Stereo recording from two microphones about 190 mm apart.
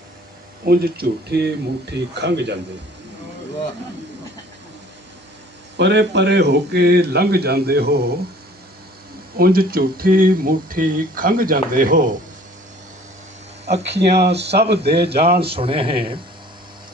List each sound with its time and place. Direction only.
0.6 s speech: 55° right (ahead or behind)
5.7 s speech: 65° right (ahead or behind)
9.4 s speech: 50° right (ahead or behind)
13.7 s speech: 35° right (ahead or behind)
14.0 s speech: 60° right (ahead or behind)
15.5 s speech: 30° right (ahead or behind)